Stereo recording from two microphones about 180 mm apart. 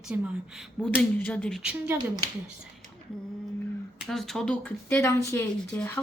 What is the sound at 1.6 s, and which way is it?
Speech, 10° right (ahead or behind).